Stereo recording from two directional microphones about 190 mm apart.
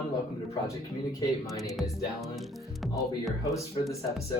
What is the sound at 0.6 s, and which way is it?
Speech, 15° left (ahead or behind).